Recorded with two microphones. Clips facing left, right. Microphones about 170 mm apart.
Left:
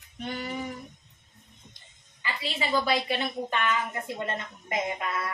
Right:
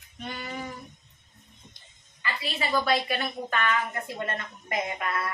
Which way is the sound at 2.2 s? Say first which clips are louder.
Even; 20° left (ahead or behind).